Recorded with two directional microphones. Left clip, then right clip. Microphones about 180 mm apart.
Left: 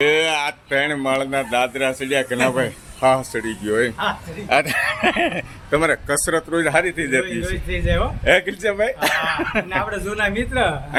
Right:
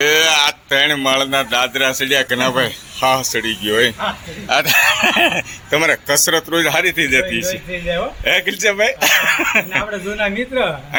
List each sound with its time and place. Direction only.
0.0 s a man's voice: centre (ahead or behind)
7.4 s speech: 20° left (ahead or behind)
8.2 s a man's voice: centre (ahead or behind)
10.2 s a man's voice: 15° left (ahead or behind)